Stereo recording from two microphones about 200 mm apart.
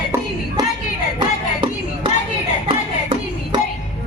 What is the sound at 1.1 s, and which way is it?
Music, 25° right (ahead or behind).